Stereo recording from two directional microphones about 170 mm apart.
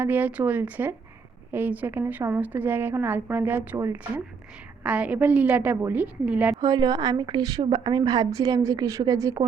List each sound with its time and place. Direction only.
0.0 s a woman's voice: 10° right (ahead or behind)
6.6 s a woman's voice: 20° right (ahead or behind)